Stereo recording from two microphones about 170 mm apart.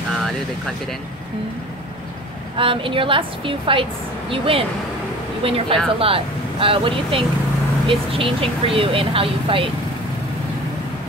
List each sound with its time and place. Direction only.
2.5 s speech: 30° right (ahead or behind)